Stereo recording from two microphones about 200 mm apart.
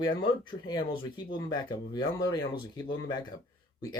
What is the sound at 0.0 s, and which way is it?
Speech, 25° left (ahead or behind).